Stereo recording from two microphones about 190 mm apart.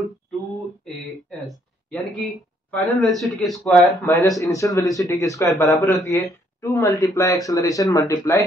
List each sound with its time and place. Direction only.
1.0 s a sound: centre (ahead or behind)
3.4 s speech: centre (ahead or behind)
4.0 s speech: 10° left (ahead or behind)